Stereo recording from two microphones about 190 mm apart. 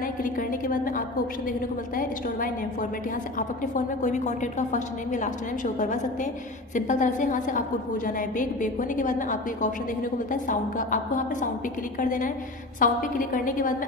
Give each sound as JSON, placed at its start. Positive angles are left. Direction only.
{"t": 0.0, "sound": "a woman's voice", "side_deg": 45}
{"t": 12.0, "sound": "a woman's voice", "side_deg": 45}